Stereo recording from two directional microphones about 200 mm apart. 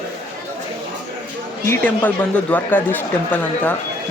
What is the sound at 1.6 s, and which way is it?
Speech, 10° left (ahead or behind).